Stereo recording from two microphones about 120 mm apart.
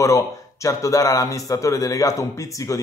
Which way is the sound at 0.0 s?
25° left (ahead or behind).